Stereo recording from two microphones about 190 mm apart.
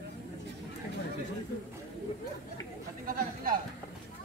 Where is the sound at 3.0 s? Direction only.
50° right (ahead or behind).